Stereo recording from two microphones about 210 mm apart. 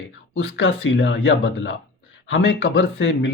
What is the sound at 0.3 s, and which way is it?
A man's voice, 60° left (ahead or behind).